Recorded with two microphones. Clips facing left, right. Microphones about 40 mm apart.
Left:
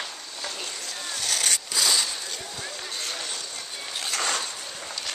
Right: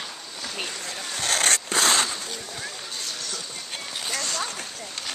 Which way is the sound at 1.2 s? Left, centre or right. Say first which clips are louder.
Right 5 dB; right.